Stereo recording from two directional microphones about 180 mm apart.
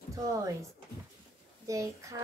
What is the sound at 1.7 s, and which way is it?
Speech, 15° right (ahead or behind).